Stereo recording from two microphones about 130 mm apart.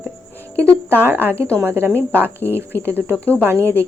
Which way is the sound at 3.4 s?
20° right (ahead or behind).